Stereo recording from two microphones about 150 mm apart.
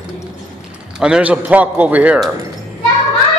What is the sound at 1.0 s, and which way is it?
A man's voice, 5° right (ahead or behind).